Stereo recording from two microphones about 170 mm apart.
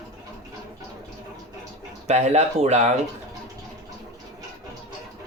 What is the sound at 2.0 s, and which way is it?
Speech, 40° right (ahead or behind).